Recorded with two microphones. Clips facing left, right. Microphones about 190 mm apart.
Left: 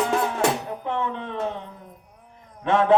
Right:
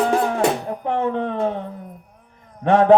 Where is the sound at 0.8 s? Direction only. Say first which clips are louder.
Right 7 dB; 45° right (ahead or behind).